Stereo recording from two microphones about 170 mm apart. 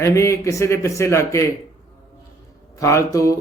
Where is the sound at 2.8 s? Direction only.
20° left (ahead or behind).